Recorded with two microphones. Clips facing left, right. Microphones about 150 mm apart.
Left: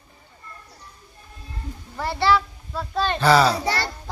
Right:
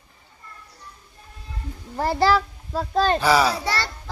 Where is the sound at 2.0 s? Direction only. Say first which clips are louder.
Right 1 dB; 40° right (ahead or behind).